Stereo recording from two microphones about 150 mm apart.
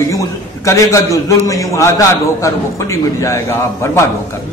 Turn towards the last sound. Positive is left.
turn(degrees=20)  # may be behind; listen again after turning